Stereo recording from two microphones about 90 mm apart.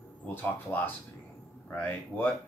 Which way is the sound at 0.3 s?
20° left (ahead or behind).